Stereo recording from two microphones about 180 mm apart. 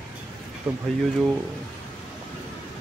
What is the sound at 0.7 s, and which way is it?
Speech, 10° right (ahead or behind).